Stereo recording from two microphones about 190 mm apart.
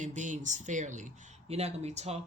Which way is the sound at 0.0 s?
40° right (ahead or behind).